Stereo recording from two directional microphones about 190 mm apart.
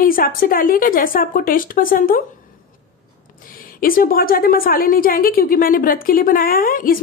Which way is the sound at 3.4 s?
50° left (ahead or behind).